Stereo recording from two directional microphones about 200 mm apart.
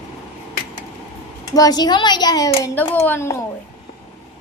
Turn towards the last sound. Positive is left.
turn(degrees=15)  # may be behind; listen again after turning